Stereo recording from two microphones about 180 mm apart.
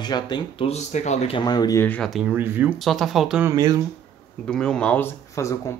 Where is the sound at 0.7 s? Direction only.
40° left (ahead or behind).